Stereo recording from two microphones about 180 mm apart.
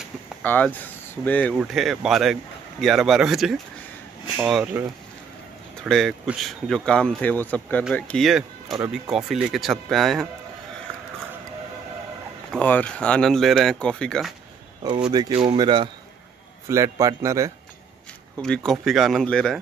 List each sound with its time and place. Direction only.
0.4 s speech: 10° left (ahead or behind)
5.9 s speech: centre (ahead or behind)
12.4 s speech: 10° left (ahead or behind)
15.0 s a man's voice: 20° right (ahead or behind)
18.4 s speech: 5° left (ahead or behind)